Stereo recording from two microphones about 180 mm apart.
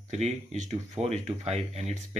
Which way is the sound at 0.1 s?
40° right (ahead or behind).